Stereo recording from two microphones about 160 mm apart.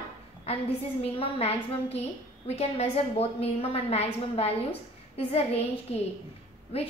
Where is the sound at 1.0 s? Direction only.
40° left (ahead or behind).